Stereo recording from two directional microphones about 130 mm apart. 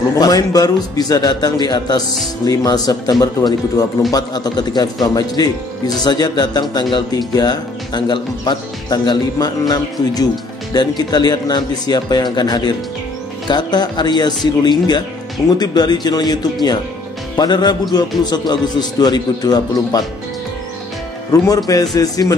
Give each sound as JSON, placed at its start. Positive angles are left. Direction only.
{"t": 0.2, "sound": "a man's voice", "side_deg": 30}
{"t": 17.4, "sound": "speech", "side_deg": 35}
{"t": 21.3, "sound": "a man's voice", "side_deg": 25}